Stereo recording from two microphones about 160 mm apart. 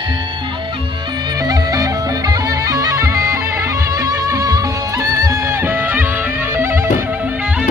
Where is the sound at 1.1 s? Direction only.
25° right (ahead or behind).